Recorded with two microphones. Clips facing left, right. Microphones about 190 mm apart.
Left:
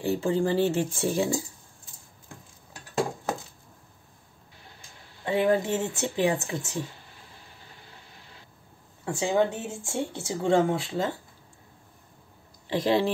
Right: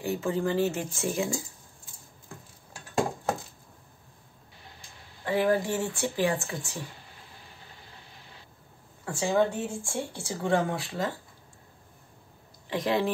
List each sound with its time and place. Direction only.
0.0 s speech: 30° left (ahead or behind)
5.2 s a woman's voice: 20° left (ahead or behind)
9.0 s a woman's voice: 20° left (ahead or behind)
12.6 s speech: 30° left (ahead or behind)